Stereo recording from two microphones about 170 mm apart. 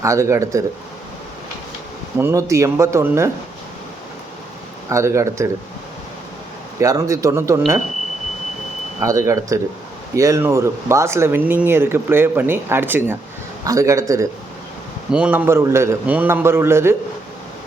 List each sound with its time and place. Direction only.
0.0 s speech: 15° right (ahead or behind)
2.1 s speech: 15° right (ahead or behind)
4.9 s speech: 15° right (ahead or behind)
6.7 s speech: 20° right (ahead or behind)
9.0 s speech: 15° right (ahead or behind)
15.1 s speech: 10° right (ahead or behind)